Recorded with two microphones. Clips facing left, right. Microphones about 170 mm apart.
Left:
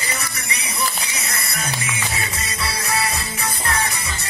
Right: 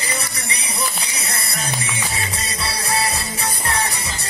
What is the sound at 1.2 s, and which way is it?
Music, 30° right (ahead or behind).